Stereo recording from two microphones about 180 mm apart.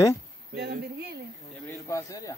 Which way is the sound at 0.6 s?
60° right (ahead or behind).